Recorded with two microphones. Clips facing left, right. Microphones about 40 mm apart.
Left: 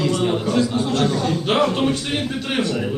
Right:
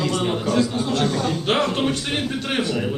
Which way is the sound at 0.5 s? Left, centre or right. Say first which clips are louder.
Even; left.